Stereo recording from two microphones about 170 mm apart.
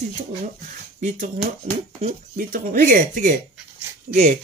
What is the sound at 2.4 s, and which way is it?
Speech, 55° right (ahead or behind).